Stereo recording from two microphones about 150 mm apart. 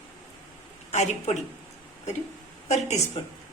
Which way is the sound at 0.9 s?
50° left (ahead or behind).